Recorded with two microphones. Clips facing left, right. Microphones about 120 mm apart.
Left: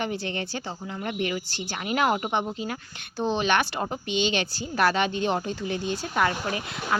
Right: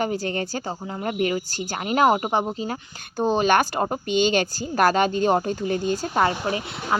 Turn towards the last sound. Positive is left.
turn(degrees=-25)  # may be behind; listen again after turning